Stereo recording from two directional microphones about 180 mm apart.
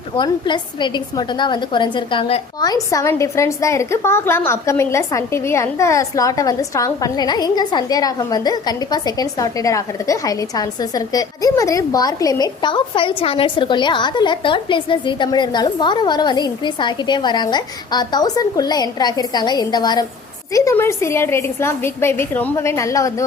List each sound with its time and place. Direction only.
0.2 s a woman's voice: 25° left (ahead or behind)
2.6 s a woman's voice: 20° left (ahead or behind)